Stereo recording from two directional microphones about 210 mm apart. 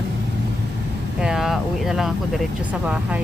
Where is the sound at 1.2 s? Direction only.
Centre (ahead or behind).